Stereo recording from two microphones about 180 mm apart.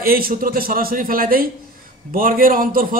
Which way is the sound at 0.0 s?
55° right (ahead or behind).